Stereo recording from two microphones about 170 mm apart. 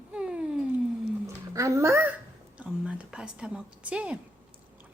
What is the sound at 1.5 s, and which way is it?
A woman's voice, 20° right (ahead or behind).